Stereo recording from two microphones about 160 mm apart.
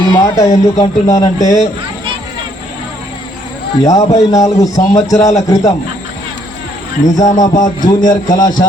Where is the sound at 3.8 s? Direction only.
20° left (ahead or behind).